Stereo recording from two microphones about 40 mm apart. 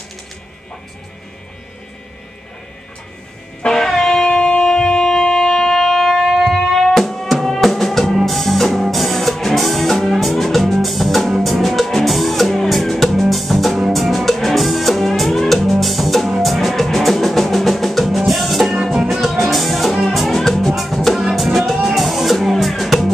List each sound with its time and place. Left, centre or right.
3.6 s music: centre
4.1 s shofar: left
4.6 s wind instrument: centre
6.2 s music: centre
21.2 s music: centre